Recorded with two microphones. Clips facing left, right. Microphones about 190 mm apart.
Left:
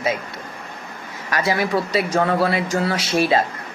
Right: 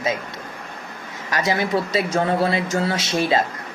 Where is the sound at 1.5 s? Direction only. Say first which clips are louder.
Left 1 dB; 25° right (ahead or behind).